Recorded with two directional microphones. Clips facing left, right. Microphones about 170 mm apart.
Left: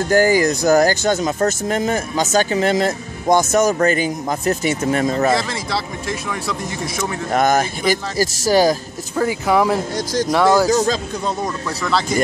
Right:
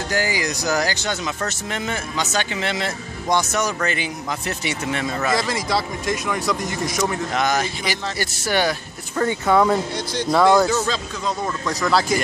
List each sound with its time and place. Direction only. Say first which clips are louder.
0.1 s speech: left 10 dB; 50° left (ahead or behind)
5.5 s speech: right 1 dB; centre (ahead or behind)
7.3 s speech: left 9 dB; 50° left (ahead or behind)
9.5 s speech: even; 10° left (ahead or behind)
9.9 s speech: left 4 dB; 45° left (ahead or behind)
10.3 s speech: even; centre (ahead or behind)
10.7 s speech: left 5 dB; 40° left (ahead or behind)